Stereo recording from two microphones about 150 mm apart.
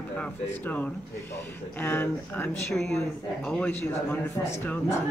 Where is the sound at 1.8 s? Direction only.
15° left (ahead or behind).